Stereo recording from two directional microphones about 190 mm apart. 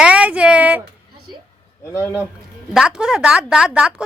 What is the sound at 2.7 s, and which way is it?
Speech, 5° right (ahead or behind).